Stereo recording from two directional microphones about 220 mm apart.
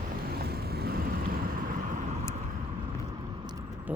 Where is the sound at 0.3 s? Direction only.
45° right (ahead or behind).